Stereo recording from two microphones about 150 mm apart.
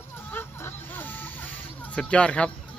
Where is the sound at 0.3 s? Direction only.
15° left (ahead or behind).